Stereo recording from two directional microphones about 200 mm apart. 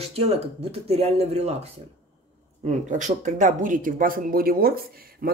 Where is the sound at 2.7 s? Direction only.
35° right (ahead or behind).